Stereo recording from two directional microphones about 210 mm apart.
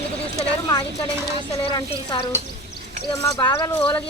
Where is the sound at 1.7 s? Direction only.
25° left (ahead or behind).